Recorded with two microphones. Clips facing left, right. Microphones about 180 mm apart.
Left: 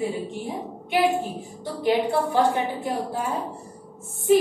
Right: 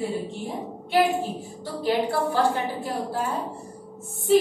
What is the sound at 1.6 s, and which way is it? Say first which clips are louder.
A woman's voice: left 2 dB; 20° left (ahead or behind).